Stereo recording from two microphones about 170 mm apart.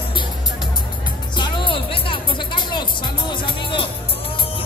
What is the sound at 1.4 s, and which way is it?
Music, 30° left (ahead or behind).